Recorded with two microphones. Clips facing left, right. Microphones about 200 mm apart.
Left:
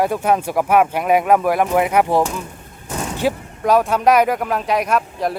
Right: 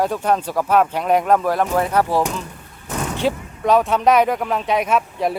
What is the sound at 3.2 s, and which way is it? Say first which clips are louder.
Speech: left 1 dB; 5° left (ahead or behind).